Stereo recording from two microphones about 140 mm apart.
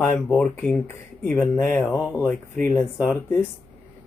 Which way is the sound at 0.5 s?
15° left (ahead or behind).